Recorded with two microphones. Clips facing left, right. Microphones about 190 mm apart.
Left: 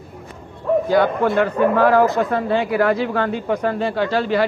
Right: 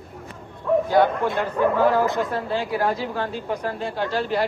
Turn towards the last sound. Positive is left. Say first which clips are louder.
# left 5 dB
turn(degrees=85)